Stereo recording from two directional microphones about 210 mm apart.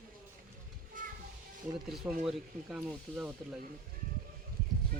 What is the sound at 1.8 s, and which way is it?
Speech, centre (ahead or behind).